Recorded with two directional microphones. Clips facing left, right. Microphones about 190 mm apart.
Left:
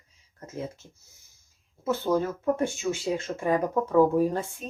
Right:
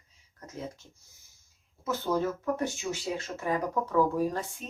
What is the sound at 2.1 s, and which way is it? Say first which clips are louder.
Speech: left 4 dB; 15° left (ahead or behind).